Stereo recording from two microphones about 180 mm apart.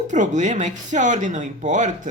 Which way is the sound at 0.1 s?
40° right (ahead or behind).